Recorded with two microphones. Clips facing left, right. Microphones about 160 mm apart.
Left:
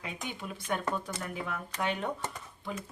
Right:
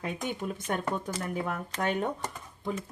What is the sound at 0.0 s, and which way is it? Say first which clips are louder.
Speech: right 6 dB; 45° right (ahead or behind).